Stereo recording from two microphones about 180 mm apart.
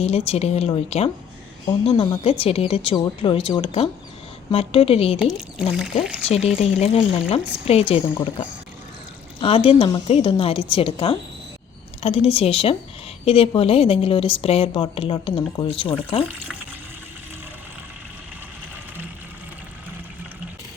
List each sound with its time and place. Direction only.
0.0 s a woman's voice: 35° left (ahead or behind)
5.2 s speech: centre (ahead or behind)
6.6 s a woman's voice: 35° left (ahead or behind)